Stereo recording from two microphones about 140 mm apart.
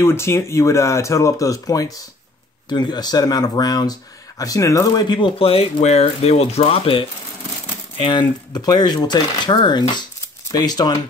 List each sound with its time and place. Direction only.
0.0 s speech: 20° left (ahead or behind)